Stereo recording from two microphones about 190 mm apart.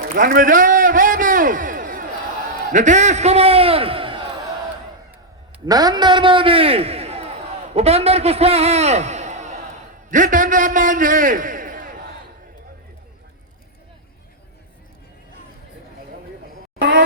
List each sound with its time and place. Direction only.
0.1 s a sound: 45° right (ahead or behind)
2.7 s a man's voice: 40° right (ahead or behind)
5.6 s a man's voice: 20° right (ahead or behind); by 11.9 s 45° right (ahead or behind)